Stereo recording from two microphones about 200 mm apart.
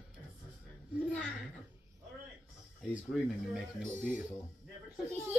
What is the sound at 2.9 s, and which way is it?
Speech, 5° right (ahead or behind).